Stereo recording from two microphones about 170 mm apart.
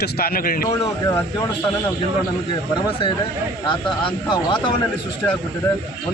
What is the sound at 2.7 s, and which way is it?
Speech, 25° left (ahead or behind).